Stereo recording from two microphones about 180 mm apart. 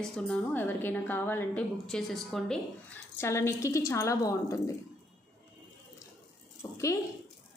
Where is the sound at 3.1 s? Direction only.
15° left (ahead or behind).